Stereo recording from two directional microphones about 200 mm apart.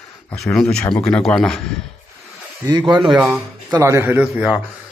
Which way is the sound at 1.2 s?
Centre (ahead or behind).